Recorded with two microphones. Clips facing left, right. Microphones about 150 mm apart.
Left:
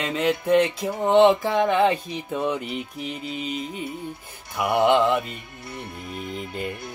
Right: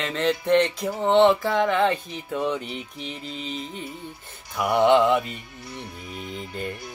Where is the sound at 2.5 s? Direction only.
5° left (ahead or behind).